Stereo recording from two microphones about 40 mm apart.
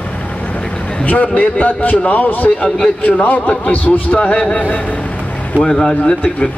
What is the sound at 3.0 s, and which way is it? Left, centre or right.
Speech, left.